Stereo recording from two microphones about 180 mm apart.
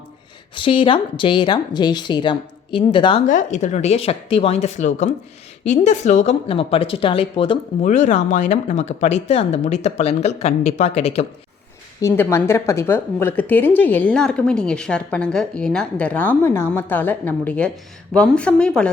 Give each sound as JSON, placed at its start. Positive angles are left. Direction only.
{"t": 0.5, "sound": "a woman's voice", "side_deg": 30}
{"t": 3.2, "sound": "a woman's voice", "side_deg": 45}
{"t": 7.9, "sound": "speech", "side_deg": 40}
{"t": 12.0, "sound": "a woman's voice", "side_deg": 15}